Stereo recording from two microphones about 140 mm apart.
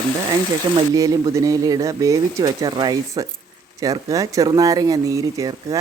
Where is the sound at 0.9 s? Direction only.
25° right (ahead or behind).